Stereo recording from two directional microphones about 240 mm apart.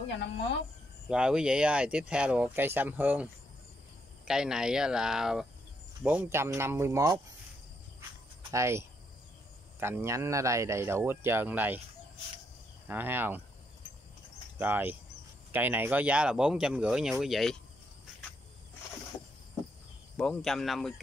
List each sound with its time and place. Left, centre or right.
1.0 s speech: centre
4.3 s speech: centre
8.5 s speech: centre
12.8 s speech: centre
14.6 s speech: centre
20.2 s speech: centre